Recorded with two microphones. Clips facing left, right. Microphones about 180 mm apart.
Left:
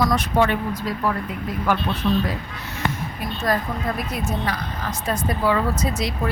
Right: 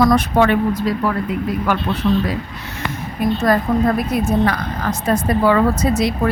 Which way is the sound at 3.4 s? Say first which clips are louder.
Right 7 dB; 65° right (ahead or behind).